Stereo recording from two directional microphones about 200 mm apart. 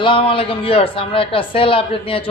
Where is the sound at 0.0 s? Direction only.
25° left (ahead or behind).